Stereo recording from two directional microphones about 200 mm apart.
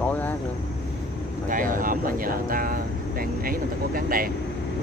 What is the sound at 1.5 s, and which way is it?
Speech, 40° right (ahead or behind).